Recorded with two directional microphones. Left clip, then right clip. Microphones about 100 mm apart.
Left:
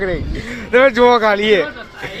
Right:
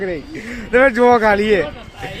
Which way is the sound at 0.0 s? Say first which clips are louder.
Left 3 dB; 55° right (ahead or behind).